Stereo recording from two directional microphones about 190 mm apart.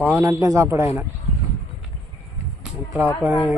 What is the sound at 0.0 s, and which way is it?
A man's voice, 10° right (ahead or behind).